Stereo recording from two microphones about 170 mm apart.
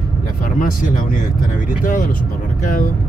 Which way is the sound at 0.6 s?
50° left (ahead or behind).